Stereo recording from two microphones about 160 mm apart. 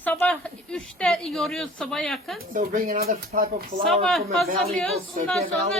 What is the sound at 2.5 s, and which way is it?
Speech, 60° right (ahead or behind).